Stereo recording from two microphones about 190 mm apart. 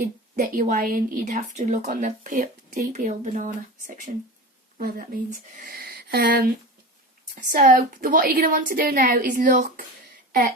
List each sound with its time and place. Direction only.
0.0 s a woman's voice: 45° right (ahead or behind)
7.5 s a woman's voice: 45° right (ahead or behind)